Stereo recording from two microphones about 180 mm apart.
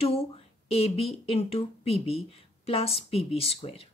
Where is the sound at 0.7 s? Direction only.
35° left (ahead or behind).